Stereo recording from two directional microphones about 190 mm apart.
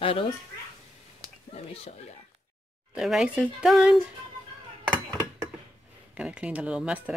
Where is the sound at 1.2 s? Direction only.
20° right (ahead or behind).